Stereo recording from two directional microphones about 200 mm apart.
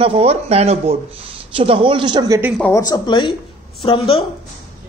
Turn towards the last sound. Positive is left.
turn(degrees=30)  # may be behind; listen again after turning